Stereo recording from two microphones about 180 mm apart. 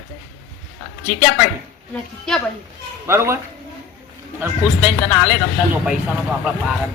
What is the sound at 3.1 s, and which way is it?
A man's voice, 15° right (ahead or behind).